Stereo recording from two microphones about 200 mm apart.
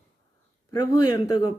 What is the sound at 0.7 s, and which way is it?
Speech, 20° left (ahead or behind).